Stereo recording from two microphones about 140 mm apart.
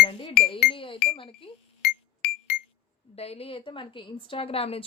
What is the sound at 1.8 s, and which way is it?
Music, 90° left.